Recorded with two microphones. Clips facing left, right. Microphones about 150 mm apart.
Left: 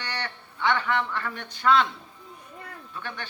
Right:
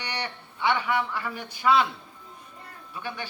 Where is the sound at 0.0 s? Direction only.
15° right (ahead or behind).